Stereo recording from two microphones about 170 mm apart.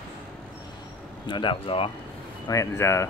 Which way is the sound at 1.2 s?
30° left (ahead or behind).